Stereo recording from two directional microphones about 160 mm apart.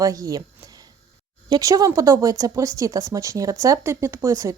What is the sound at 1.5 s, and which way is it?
A woman's voice, 20° right (ahead or behind).